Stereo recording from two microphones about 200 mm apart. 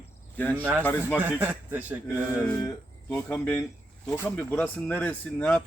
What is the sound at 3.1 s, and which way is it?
Speech, 10° left (ahead or behind).